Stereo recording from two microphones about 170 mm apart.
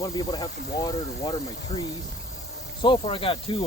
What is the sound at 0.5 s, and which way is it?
Speech, 70° left (ahead or behind).